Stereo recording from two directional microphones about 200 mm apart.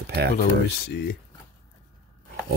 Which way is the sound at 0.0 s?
55° right (ahead or behind).